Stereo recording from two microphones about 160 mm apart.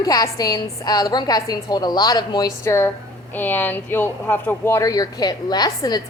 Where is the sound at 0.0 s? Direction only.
20° left (ahead or behind).